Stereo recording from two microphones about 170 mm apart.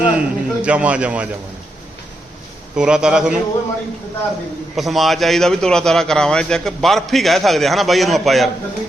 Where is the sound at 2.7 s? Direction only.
5° right (ahead or behind).